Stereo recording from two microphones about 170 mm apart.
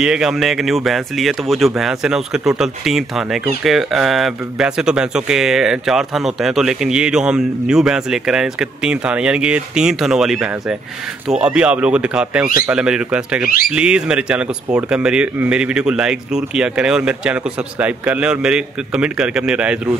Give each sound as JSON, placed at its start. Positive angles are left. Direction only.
{"t": 0.0, "sound": "speech", "side_deg": -5}